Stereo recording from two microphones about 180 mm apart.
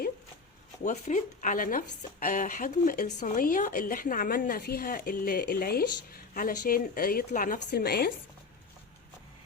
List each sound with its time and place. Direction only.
0.9 s a woman's voice: 45° left (ahead or behind)
7.7 s speech: 60° left (ahead or behind)